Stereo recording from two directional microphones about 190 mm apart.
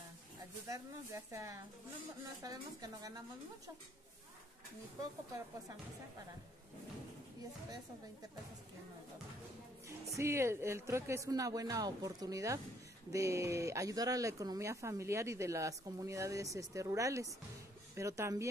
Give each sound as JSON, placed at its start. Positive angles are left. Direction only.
{"t": 0.7, "sound": "speech", "side_deg": -15}
{"t": 10.1, "sound": "speech", "side_deg": -15}